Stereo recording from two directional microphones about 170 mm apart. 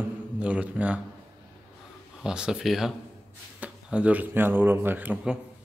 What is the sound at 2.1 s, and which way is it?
Speech, 5° right (ahead or behind).